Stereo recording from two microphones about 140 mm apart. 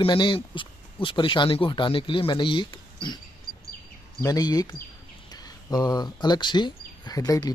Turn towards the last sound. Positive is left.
turn(degrees=25)  # may be behind; listen again after turning